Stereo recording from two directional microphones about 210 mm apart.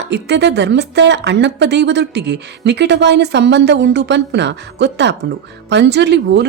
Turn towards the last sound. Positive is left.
turn(degrees=-55)  # may be behind; listen again after turning